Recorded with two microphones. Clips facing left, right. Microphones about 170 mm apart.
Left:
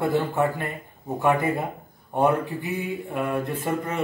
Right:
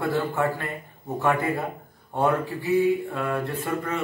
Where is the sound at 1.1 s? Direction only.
20° left (ahead or behind).